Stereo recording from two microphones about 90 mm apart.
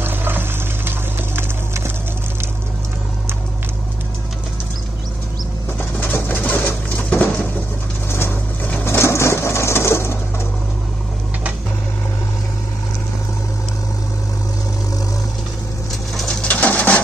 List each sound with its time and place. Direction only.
0.0 s music: 25° right (ahead or behind)
5.8 s pigeon: 25° left (ahead or behind)
8.1 s crushing: 25° left (ahead or behind)
16.2 s bird: 10° left (ahead or behind)